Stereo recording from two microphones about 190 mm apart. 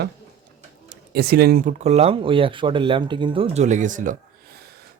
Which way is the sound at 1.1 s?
55° right (ahead or behind).